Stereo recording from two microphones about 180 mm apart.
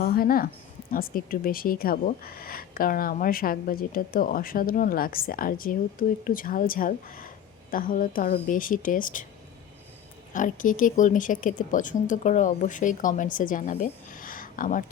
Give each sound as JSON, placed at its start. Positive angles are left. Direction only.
{"t": 0.0, "sound": "speech", "side_deg": 55}
{"t": 10.3, "sound": "speech", "side_deg": 45}